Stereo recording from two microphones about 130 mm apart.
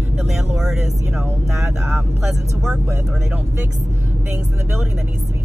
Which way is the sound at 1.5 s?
Centre (ahead or behind).